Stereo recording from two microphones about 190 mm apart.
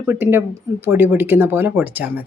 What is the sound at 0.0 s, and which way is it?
A woman's voice, 10° right (ahead or behind).